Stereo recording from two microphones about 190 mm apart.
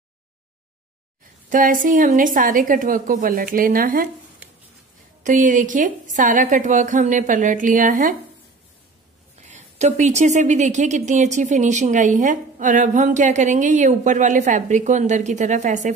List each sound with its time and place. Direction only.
1.5 s a woman's voice: 45° right (ahead or behind)
5.2 s a woman's voice: 40° right (ahead or behind)
9.5 s a woman's voice: 35° right (ahead or behind)